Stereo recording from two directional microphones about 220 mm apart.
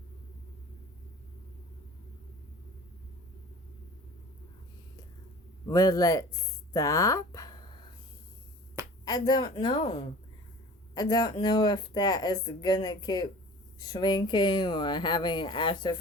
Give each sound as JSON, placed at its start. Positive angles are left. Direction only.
{"t": 5.6, "sound": "speech", "side_deg": 15}
{"t": 9.0, "sound": "speech", "side_deg": 20}